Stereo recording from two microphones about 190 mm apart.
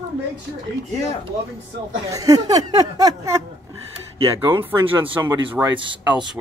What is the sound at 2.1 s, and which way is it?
Speech, 20° right (ahead or behind).